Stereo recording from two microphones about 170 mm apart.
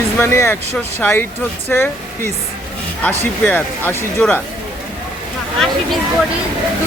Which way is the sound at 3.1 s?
10° left (ahead or behind).